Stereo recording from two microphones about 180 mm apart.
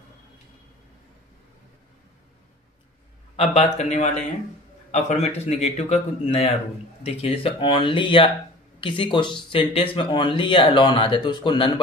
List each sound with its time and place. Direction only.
3.3 s a man's voice: 35° left (ahead or behind)